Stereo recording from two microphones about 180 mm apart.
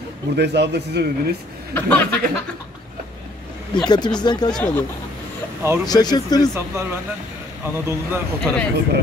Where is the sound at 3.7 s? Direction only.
25° left (ahead or behind).